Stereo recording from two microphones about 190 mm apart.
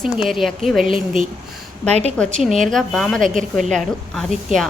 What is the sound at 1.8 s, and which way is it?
Speech, 35° right (ahead or behind).